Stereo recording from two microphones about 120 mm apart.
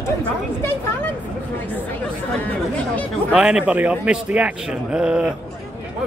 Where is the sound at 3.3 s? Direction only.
10° right (ahead or behind).